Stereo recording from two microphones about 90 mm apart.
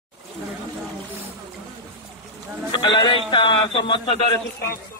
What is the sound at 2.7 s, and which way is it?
A man's voice, 60° left (ahead or behind).